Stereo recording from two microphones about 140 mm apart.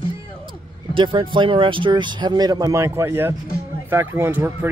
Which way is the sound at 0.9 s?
35° right (ahead or behind).